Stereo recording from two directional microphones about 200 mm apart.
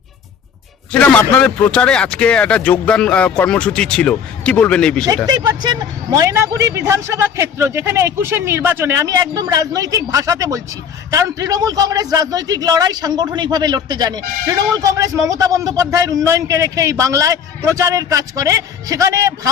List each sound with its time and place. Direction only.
0.9 s speech: 10° left (ahead or behind)
5.0 s a man's voice: 20° right (ahead or behind)